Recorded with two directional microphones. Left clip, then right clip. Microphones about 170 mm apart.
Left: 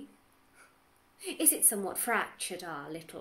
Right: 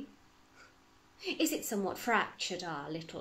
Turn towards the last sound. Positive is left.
turn(degrees=15)  # may be behind; listen again after turning